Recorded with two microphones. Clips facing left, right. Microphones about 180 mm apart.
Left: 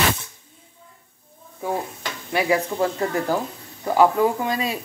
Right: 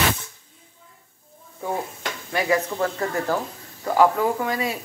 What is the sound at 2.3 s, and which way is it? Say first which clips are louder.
Speech: left 1 dB; 15° left (ahead or behind).